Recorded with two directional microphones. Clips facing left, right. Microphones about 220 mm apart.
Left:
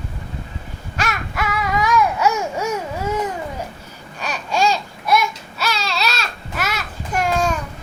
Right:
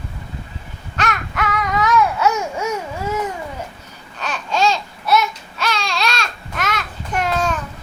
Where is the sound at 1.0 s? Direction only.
10° left (ahead or behind).